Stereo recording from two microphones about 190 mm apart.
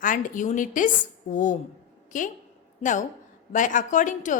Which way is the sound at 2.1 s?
40° left (ahead or behind).